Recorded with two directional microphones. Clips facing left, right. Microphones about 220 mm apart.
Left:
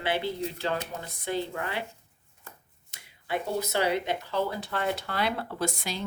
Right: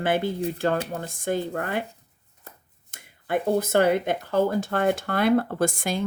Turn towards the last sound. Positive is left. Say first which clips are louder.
# right 7 dB
turn(degrees=-50)  # may be behind; listen again after turning